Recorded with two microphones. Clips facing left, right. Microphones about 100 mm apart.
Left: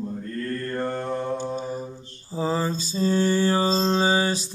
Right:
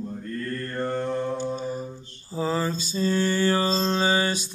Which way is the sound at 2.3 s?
30° left (ahead or behind).